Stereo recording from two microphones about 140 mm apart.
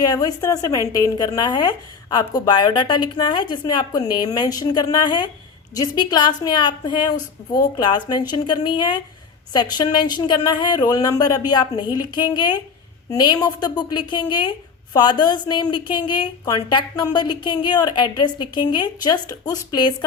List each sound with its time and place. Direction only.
0.0 s a woman's voice: 25° left (ahead or behind)